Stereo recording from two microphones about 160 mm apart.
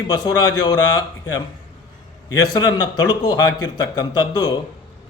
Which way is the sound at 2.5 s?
25° left (ahead or behind).